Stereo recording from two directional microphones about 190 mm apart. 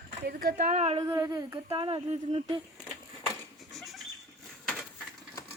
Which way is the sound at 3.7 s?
Centre (ahead or behind).